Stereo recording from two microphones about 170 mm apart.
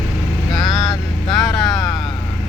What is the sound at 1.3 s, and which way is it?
Speech, centre (ahead or behind).